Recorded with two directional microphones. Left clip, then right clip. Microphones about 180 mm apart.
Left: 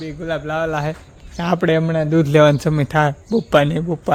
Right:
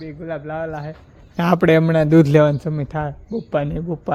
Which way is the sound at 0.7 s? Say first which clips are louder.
Left 8 dB; 55° left (ahead or behind).